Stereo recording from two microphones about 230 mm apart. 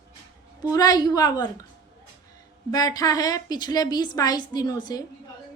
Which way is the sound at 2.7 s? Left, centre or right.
Centre.